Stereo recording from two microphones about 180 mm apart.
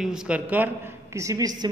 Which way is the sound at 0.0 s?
5° right (ahead or behind).